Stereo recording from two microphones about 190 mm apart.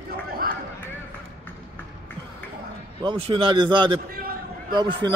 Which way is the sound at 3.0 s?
30° right (ahead or behind).